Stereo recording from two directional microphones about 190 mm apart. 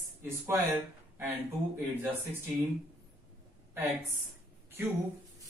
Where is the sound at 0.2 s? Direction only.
10° right (ahead or behind).